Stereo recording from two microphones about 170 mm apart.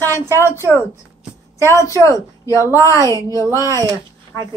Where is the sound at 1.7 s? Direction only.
20° left (ahead or behind).